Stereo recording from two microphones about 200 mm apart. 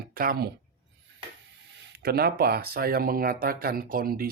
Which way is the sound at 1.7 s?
50° right (ahead or behind).